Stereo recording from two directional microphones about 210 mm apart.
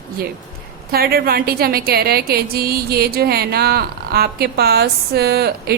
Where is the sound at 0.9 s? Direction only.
45° right (ahead or behind).